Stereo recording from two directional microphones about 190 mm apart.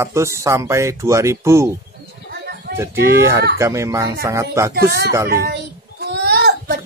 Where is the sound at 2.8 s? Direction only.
15° right (ahead or behind).